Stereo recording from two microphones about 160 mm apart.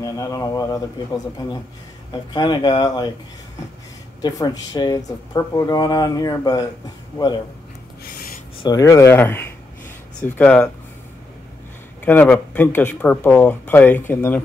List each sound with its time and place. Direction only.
0.0 s speech: 20° left (ahead or behind)
4.2 s speech: 25° left (ahead or behind)
8.6 s speech: 20° left (ahead or behind)
12.0 s speech: 10° left (ahead or behind)